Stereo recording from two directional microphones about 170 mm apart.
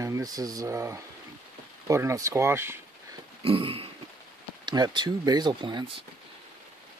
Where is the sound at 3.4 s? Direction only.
30° right (ahead or behind).